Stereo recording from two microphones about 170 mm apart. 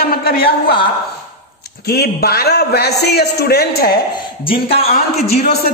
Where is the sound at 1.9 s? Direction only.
70° left (ahead or behind).